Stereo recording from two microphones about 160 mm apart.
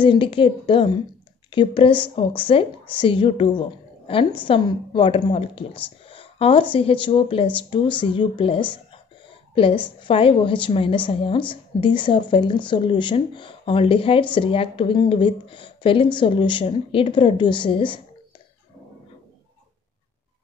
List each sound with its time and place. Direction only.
0.0 s a woman's voice: 35° left (ahead or behind)